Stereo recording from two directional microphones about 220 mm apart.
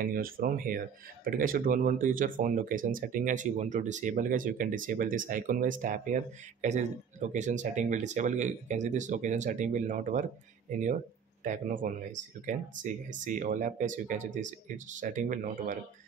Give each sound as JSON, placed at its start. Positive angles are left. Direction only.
{"t": 0.0, "sound": "speech", "side_deg": -40}